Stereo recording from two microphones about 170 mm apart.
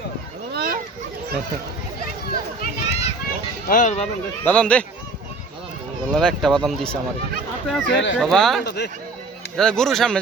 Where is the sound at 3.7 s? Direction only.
45° left (ahead or behind).